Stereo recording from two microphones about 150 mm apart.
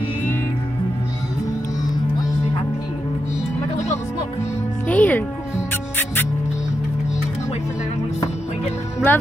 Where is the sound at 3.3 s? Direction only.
50° left (ahead or behind).